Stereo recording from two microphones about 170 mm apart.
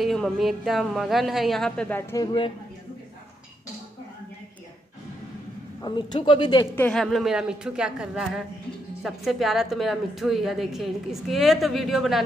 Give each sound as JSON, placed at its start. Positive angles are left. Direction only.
{"t": 0.0, "sound": "a woman's voice", "side_deg": 0}
{"t": 5.8, "sound": "speech", "side_deg": 25}
{"t": 6.7, "sound": "a woman's voice", "side_deg": 10}